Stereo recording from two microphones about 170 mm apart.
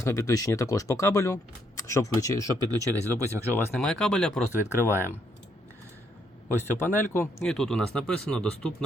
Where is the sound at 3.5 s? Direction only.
5° left (ahead or behind).